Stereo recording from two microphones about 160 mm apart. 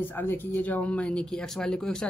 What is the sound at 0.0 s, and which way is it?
Speech, 15° left (ahead or behind).